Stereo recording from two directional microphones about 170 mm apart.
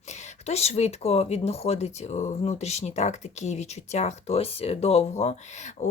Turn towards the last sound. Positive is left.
turn(degrees=40)  # may be behind; listen again after turning